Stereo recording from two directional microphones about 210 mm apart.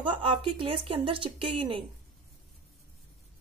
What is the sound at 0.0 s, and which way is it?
Speech, 25° right (ahead or behind).